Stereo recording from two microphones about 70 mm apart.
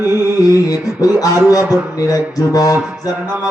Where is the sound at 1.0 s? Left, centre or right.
Left.